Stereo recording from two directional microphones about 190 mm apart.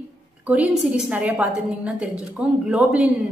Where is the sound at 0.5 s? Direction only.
5° right (ahead or behind).